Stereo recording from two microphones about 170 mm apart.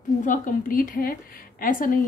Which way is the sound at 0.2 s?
50° left (ahead or behind).